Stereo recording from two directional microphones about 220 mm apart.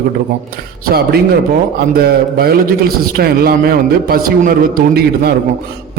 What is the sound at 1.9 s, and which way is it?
A man's voice, 45° right (ahead or behind).